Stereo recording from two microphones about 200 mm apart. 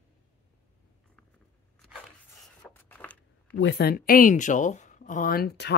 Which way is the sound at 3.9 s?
45° left (ahead or behind).